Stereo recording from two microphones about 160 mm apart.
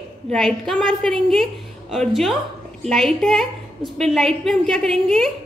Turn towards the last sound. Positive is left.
turn(degrees=0)  # may be behind; listen again after turning